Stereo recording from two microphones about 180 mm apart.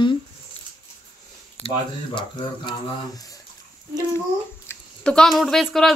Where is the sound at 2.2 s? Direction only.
25° left (ahead or behind).